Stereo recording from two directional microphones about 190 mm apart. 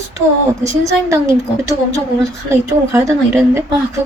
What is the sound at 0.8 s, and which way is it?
Speech, 15° right (ahead or behind).